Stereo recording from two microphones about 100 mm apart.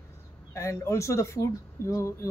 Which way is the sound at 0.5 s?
30° left (ahead or behind).